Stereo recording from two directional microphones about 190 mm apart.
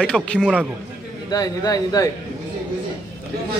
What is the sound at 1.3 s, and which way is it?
Speech, 20° left (ahead or behind).